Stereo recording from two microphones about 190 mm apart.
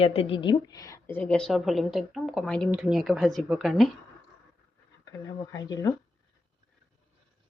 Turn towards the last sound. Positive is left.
turn(degrees=20)  # may be behind; listen again after turning